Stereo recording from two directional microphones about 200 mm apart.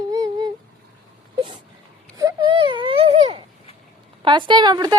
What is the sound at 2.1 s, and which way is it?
Baby cry, 20° right (ahead or behind).